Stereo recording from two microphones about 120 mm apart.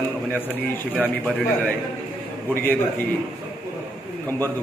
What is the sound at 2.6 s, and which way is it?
Speech, 15° left (ahead or behind).